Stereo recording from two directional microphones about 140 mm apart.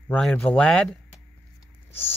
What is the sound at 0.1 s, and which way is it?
Speech, 10° left (ahead or behind).